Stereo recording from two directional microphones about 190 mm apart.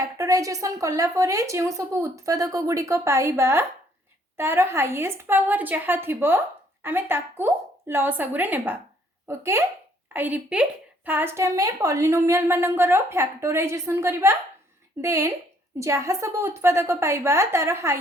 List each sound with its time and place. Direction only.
0.0 s a woman's voice: 20° right (ahead or behind)